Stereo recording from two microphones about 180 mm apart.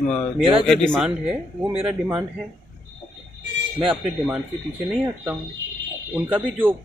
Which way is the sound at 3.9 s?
10° right (ahead or behind).